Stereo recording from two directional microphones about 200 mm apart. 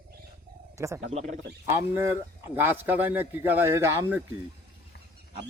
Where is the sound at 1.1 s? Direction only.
35° right (ahead or behind).